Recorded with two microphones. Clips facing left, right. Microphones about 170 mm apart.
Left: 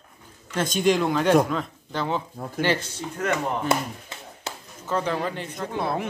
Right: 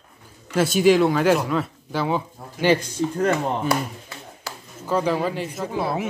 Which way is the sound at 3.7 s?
25° left (ahead or behind).